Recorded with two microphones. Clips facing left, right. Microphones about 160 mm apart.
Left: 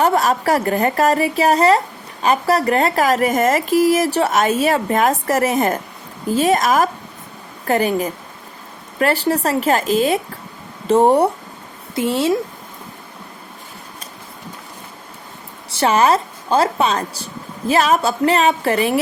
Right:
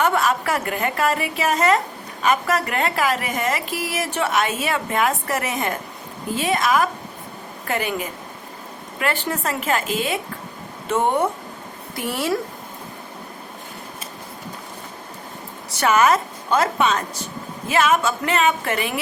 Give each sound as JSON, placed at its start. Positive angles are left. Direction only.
{"t": 0.0, "sound": "speech", "side_deg": 40}
{"t": 11.9, "sound": "a woman's voice", "side_deg": 25}
{"t": 15.7, "sound": "speech", "side_deg": 30}